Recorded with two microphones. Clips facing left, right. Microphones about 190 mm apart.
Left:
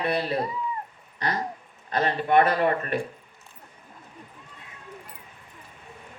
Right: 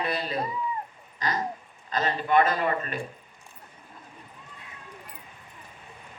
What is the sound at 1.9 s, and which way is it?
Speech, 60° left (ahead or behind).